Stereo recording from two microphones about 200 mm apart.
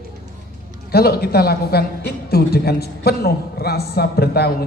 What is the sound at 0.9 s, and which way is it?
A woman's voice, 50° left (ahead or behind).